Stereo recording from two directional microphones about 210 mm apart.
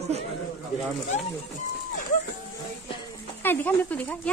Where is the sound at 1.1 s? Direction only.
35° left (ahead or behind).